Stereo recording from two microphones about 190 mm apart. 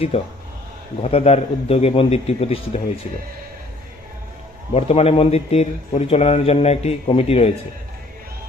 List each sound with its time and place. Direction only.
0.1 s a man's voice: 30° left (ahead or behind)
4.7 s a man's voice: 35° left (ahead or behind)